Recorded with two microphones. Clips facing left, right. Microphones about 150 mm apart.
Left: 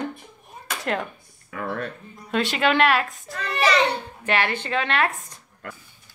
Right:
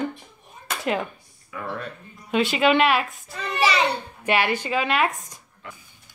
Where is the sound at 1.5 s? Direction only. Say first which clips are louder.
Left 3 dB; 50° left (ahead or behind).